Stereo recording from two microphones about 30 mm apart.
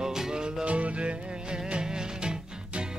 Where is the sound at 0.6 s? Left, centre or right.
Right.